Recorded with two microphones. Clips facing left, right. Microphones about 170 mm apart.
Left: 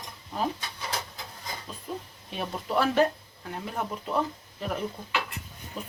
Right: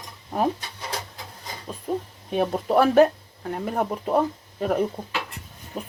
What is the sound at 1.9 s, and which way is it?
Speech, 45° right (ahead or behind).